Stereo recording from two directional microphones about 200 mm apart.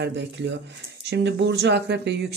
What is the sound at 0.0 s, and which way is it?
Speech, 60° right (ahead or behind).